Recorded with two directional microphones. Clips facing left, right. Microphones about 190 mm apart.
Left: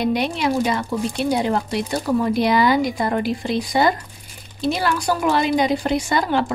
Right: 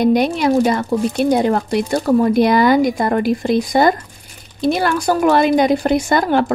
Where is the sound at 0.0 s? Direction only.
45° right (ahead or behind).